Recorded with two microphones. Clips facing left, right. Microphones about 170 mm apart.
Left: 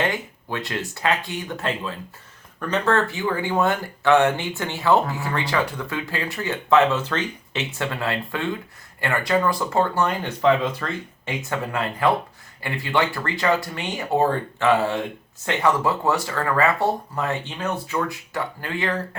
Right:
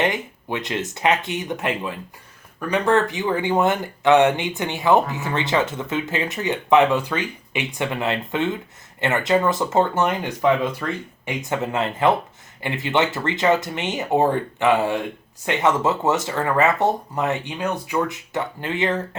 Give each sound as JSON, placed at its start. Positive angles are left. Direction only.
{"t": 0.0, "sound": "speech", "side_deg": -20}